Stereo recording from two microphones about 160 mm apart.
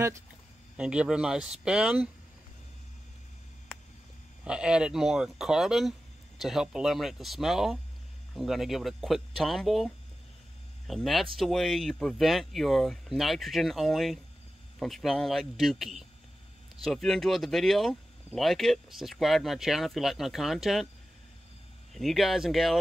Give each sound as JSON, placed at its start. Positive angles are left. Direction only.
{"t": 0.7, "sound": "speech", "side_deg": -5}
{"t": 4.5, "sound": "speech", "side_deg": -5}
{"t": 21.9, "sound": "speech", "side_deg": 0}